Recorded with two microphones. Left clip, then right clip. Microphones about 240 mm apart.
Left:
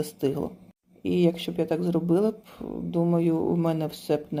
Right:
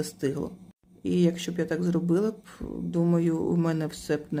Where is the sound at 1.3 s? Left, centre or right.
Right.